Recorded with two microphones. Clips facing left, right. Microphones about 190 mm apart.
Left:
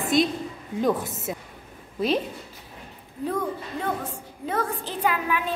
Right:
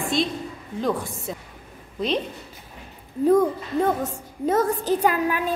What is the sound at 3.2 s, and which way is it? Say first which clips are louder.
A woman's voice: right 10 dB; 40° right (ahead or behind).